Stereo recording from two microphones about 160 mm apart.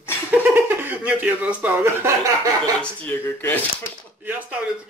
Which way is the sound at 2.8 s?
10° left (ahead or behind).